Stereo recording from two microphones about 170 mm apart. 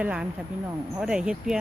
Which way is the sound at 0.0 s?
5° right (ahead or behind).